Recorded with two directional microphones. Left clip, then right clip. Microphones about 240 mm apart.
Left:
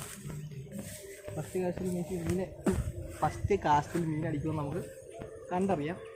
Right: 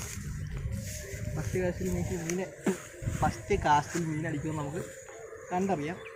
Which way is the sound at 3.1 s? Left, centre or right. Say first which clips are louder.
Right 1 dB; centre.